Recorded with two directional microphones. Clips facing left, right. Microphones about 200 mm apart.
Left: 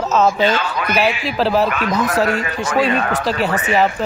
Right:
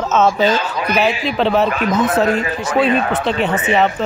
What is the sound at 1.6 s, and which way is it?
Speech, 30° right (ahead or behind).